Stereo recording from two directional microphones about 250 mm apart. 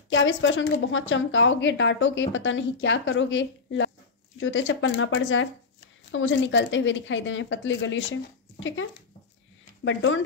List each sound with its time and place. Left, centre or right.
0.1 s a woman's voice: left
9.8 s a woman's voice: left